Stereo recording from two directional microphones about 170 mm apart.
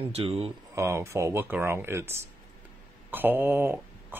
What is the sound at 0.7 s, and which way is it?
Speech, 15° right (ahead or behind).